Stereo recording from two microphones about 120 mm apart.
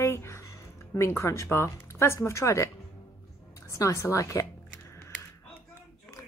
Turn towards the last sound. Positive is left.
turn(degrees=25)  # may be behind; listen again after turning